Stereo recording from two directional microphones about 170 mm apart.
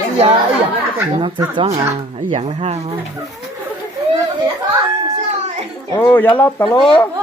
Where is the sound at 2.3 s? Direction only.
35° right (ahead or behind).